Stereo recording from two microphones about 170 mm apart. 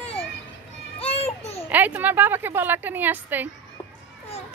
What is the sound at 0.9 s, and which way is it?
Children playing, 35° left (ahead or behind).